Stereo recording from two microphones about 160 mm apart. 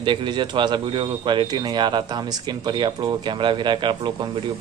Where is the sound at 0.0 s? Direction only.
30° right (ahead or behind).